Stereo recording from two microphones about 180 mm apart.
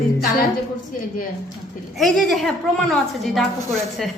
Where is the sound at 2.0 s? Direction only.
Centre (ahead or behind).